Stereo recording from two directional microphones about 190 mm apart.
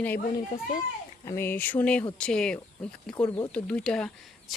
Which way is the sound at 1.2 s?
15° left (ahead or behind).